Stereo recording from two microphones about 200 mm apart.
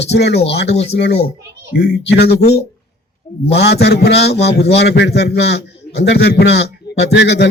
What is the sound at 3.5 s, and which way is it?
A man's voice, 55° left (ahead or behind).